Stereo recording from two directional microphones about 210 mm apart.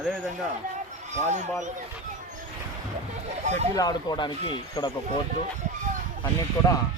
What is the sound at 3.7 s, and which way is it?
Speech, 20° left (ahead or behind).